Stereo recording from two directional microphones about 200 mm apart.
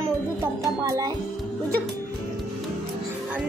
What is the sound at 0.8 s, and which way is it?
Music, 15° right (ahead or behind).